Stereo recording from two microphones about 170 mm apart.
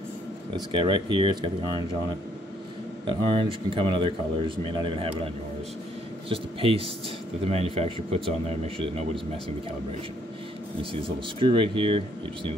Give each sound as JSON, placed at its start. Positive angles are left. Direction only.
{"t": 0.7, "sound": "speech", "side_deg": -30}
{"t": 3.1, "sound": "speech", "side_deg": -30}
{"t": 10.8, "sound": "speech", "side_deg": -30}